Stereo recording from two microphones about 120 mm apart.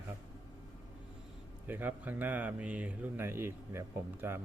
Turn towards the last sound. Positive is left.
turn(degrees=-20)  # may be behind; listen again after turning